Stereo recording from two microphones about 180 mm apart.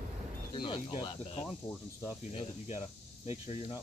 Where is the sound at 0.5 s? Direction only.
25° left (ahead or behind).